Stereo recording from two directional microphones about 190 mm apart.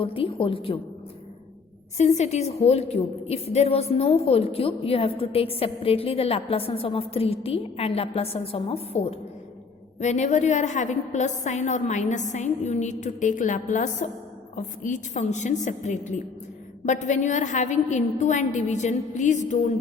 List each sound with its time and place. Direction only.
0.0 s a woman's voice: 30° left (ahead or behind)
2.0 s a woman's voice: 35° left (ahead or behind)